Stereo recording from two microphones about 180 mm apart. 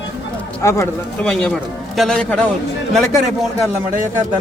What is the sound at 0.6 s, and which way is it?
A man's voice, 15° left (ahead or behind).